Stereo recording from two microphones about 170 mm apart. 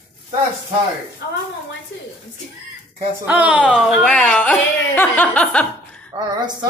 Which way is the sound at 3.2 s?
10° right (ahead or behind).